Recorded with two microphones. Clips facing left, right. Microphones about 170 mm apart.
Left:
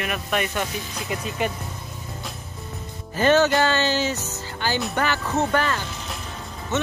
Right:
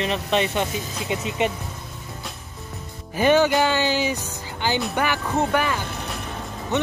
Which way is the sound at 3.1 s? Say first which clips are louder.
Right 1 dB; 15° right (ahead or behind).